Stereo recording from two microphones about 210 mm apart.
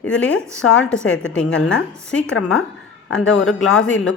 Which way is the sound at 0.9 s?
5° left (ahead or behind).